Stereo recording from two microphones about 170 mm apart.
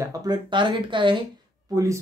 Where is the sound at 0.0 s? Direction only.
20° right (ahead or behind).